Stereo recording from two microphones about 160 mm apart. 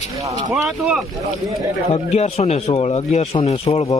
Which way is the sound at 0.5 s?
10° right (ahead or behind).